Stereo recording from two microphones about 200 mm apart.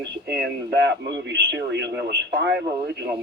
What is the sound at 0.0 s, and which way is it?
Speech, 60° right (ahead or behind).